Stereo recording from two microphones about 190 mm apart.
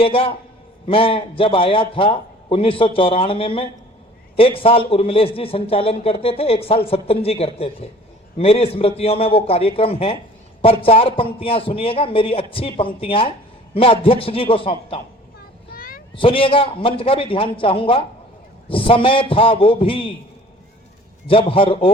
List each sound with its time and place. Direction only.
0.0 s a man's voice: 30° left (ahead or behind)
15.7 s a sound: 50° left (ahead or behind)
16.1 s a man's voice: 25° left (ahead or behind)
21.2 s a man's voice: 30° left (ahead or behind)